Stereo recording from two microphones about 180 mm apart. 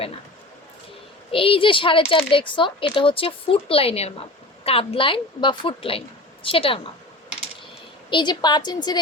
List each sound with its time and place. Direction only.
1.3 s a woman's voice: 30° left (ahead or behind)
8.1 s speech: 25° left (ahead or behind)